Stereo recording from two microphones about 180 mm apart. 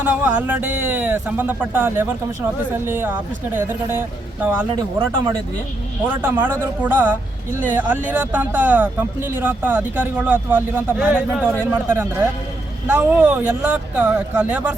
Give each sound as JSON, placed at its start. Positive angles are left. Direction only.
{"t": 0.0, "sound": "speech", "side_deg": -10}
{"t": 4.9, "sound": "speech", "side_deg": -20}
{"t": 6.2, "sound": "speech", "side_deg": -10}